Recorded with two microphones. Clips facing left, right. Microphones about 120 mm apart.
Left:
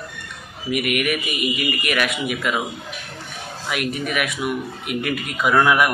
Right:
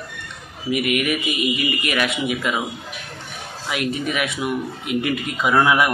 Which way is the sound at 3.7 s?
25° right (ahead or behind).